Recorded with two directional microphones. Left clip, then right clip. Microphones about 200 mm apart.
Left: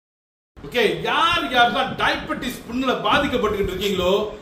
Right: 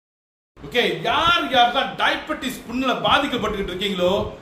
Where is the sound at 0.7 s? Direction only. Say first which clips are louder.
Left 1 dB; 20° right (ahead or behind).